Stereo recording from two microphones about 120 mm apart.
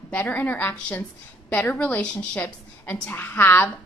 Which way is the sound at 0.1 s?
15° left (ahead or behind).